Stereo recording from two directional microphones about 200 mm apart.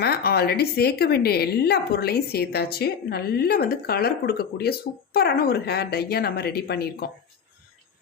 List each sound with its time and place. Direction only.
0.0 s a woman's voice: 50° left (ahead or behind)